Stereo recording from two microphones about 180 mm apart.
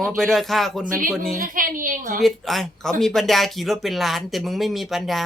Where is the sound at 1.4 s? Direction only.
50° right (ahead or behind).